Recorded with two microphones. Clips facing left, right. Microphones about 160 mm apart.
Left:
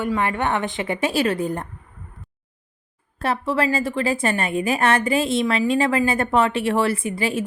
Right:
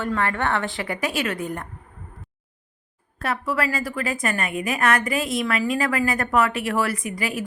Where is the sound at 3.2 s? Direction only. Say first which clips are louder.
Left 3 dB; 30° left (ahead or behind).